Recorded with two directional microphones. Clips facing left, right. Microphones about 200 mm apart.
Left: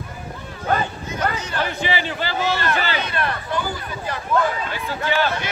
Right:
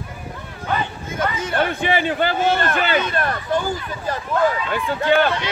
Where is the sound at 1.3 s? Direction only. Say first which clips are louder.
Right 4 dB; 55° right (ahead or behind).